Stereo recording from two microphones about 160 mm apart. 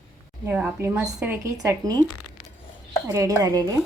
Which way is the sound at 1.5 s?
20° right (ahead or behind).